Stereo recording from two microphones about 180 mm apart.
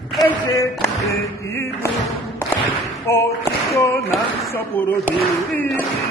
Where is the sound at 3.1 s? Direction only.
15° left (ahead or behind).